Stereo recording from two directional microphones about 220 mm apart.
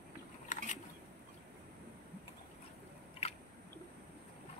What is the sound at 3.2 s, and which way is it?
Chewing, 25° left (ahead or behind).